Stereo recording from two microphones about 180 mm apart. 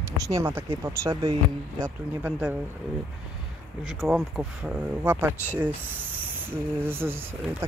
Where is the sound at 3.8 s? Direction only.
Centre (ahead or behind).